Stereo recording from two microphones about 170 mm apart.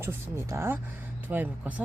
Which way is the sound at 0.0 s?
15° right (ahead or behind).